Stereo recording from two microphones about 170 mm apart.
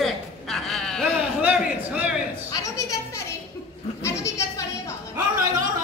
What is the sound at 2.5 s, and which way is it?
Speech, 20° left (ahead or behind).